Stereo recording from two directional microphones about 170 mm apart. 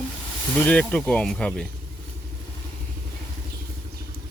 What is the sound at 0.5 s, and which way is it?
Speech, 5° left (ahead or behind).